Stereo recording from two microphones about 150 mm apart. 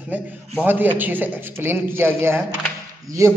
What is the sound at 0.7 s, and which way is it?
A man's voice, 10° right (ahead or behind).